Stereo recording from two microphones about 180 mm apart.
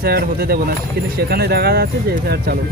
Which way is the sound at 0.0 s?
60° right (ahead or behind).